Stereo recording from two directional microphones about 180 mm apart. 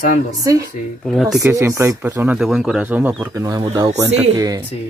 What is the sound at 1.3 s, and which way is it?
Speech, 15° right (ahead or behind).